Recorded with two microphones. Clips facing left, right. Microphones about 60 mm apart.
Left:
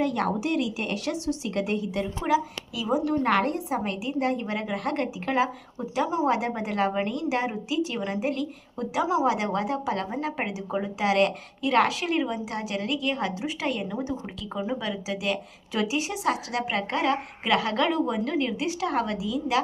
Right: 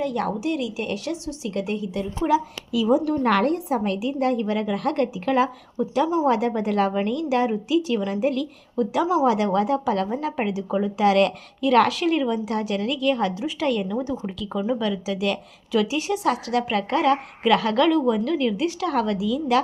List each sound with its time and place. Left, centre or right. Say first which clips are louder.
0.0 s a woman's voice: right 1 dB; left
3.1 s a woman's voice: right 3 dB; centre